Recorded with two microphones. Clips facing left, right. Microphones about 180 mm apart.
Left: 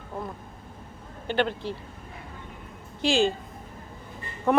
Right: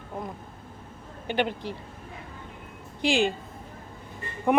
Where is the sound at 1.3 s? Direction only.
15° right (ahead or behind).